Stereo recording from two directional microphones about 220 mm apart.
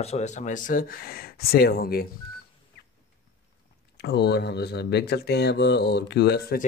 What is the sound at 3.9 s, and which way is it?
Speech, 50° left (ahead or behind).